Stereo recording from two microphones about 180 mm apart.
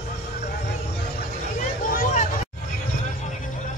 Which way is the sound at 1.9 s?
50° left (ahead or behind).